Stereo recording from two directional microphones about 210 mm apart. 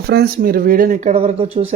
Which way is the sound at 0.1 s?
45° right (ahead or behind).